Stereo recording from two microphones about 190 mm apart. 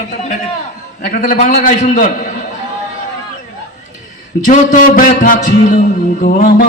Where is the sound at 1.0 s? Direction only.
45° left (ahead or behind).